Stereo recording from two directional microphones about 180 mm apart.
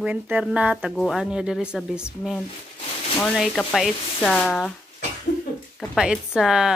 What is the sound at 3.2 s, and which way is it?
Speech, 5° left (ahead or behind).